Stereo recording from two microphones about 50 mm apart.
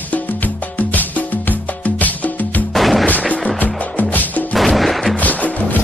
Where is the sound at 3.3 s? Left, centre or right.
Left.